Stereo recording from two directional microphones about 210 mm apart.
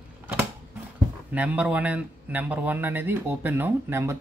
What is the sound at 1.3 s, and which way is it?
A man's voice, 5° right (ahead or behind).